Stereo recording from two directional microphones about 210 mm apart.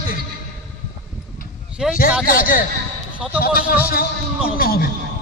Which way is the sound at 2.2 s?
45° left (ahead or behind).